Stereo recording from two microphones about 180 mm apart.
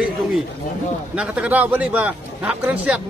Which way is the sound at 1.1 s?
10° right (ahead or behind).